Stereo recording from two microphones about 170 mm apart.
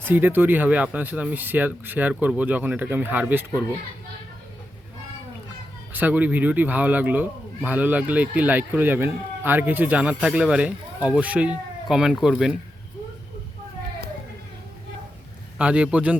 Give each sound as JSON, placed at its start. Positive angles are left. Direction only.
{"t": 0.0, "sound": "speech", "side_deg": -10}
{"t": 5.9, "sound": "speech", "side_deg": -10}
{"t": 15.5, "sound": "speech", "side_deg": -5}